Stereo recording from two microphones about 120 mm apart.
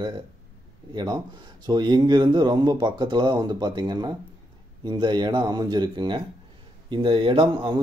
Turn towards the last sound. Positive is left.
turn(degrees=-45)  # may be behind; listen again after turning